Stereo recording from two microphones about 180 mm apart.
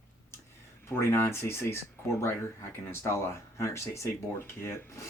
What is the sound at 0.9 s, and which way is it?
Speech, 15° left (ahead or behind).